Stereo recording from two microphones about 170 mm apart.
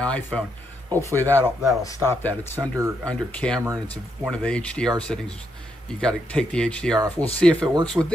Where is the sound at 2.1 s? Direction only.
10° left (ahead or behind).